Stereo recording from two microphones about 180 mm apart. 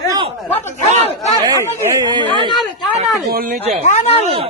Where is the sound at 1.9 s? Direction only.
20° right (ahead or behind).